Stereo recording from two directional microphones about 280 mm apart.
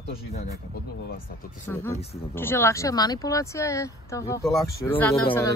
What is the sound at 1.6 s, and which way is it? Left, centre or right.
Speech, centre.